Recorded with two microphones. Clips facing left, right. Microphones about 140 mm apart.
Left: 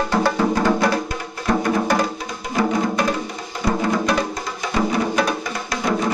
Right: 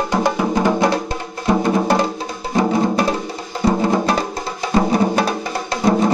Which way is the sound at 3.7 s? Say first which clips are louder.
Right 3 dB; 25° right (ahead or behind).